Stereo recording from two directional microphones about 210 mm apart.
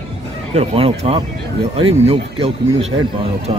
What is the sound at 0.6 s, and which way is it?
Speech, 30° right (ahead or behind).